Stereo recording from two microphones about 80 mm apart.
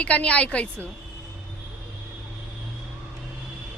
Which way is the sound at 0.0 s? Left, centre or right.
Centre.